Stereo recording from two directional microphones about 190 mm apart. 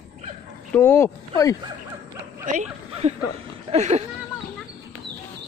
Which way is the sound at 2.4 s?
35° right (ahead or behind).